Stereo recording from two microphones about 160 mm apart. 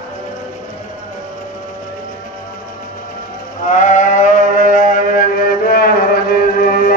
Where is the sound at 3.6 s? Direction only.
50° left (ahead or behind).